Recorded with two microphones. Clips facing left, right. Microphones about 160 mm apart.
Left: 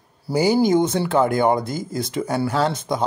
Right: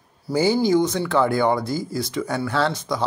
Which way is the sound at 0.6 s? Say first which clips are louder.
Left 2 dB; 20° left (ahead or behind).